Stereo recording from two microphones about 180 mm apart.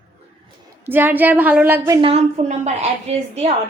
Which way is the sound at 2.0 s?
35° right (ahead or behind).